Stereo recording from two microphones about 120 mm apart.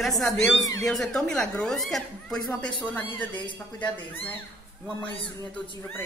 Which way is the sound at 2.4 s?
10° left (ahead or behind).